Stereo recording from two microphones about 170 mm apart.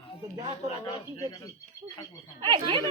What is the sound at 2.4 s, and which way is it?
Speech, 25° right (ahead or behind).